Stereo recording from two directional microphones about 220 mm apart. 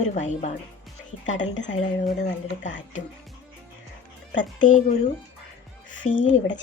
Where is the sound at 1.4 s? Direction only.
55° left (ahead or behind).